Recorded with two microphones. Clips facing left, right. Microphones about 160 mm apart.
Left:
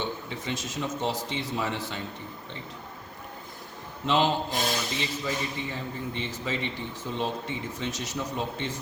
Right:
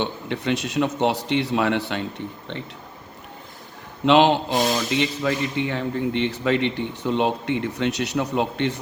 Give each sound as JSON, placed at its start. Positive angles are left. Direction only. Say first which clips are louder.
{"t": 0.0, "sound": "a man's voice", "louder": "right 7 dB", "side_deg": -70}
{"t": 4.0, "sound": "a man's voice", "louder": "right 8 dB", "side_deg": -70}